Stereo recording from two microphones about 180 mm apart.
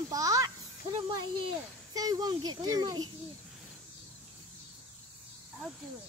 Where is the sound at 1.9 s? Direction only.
20° right (ahead or behind).